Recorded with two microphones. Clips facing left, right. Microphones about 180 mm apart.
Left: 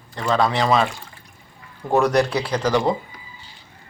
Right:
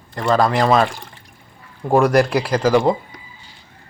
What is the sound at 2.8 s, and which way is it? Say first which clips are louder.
Speech: right 4 dB; 40° right (ahead or behind).